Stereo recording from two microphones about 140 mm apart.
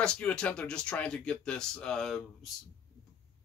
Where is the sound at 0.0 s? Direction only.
5° left (ahead or behind).